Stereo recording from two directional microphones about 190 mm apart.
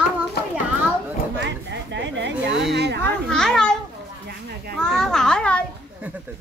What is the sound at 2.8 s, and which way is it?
Speech, 60° right (ahead or behind).